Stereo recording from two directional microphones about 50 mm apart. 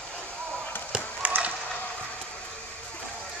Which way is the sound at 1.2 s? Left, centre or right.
Right.